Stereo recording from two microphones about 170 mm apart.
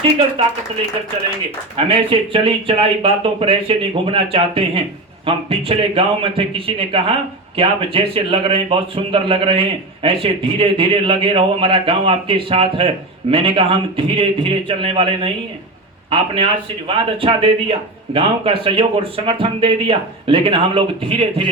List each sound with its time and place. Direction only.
1.7 s a man's voice: 35° right (ahead or behind)